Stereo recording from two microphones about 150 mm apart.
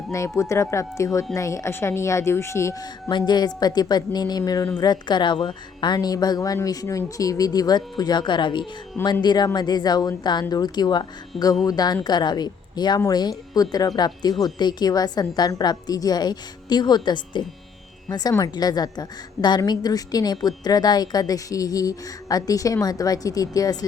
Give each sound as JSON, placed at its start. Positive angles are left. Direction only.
{"t": 0.1, "sound": "a woman's voice", "side_deg": 20}
{"t": 3.1, "sound": "a woman's voice", "side_deg": 30}